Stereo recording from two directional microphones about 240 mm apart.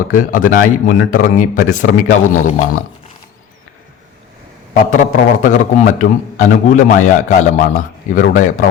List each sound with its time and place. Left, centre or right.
0.1 s a man's voice: left
4.7 s a man's voice: left